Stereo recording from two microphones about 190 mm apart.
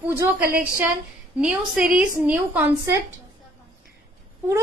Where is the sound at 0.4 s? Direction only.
50° right (ahead or behind).